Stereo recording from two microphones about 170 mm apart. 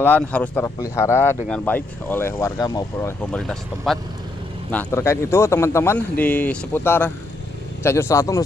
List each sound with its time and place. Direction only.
0.0 s speech: 10° left (ahead or behind)